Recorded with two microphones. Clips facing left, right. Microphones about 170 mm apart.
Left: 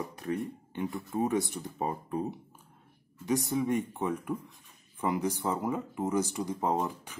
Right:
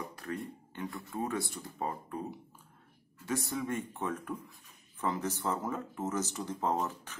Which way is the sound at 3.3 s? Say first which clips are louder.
Left 6 dB; 15° left (ahead or behind).